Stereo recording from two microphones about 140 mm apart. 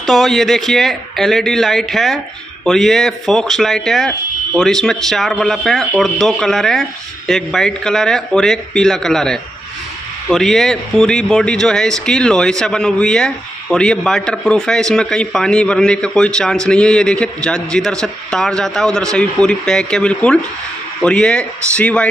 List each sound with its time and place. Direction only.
0.0 s a man's voice: centre (ahead or behind)